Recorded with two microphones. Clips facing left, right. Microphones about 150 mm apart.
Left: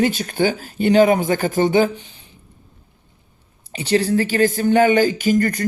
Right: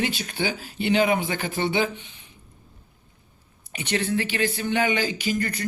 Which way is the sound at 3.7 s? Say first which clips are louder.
Left 8 dB; 35° left (ahead or behind).